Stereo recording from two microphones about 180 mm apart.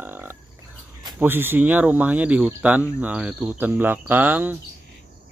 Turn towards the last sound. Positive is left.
turn(degrees=-10)  # may be behind; listen again after turning